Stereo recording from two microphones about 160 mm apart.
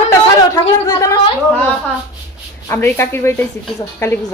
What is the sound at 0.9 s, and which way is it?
Speech, 20° left (ahead or behind).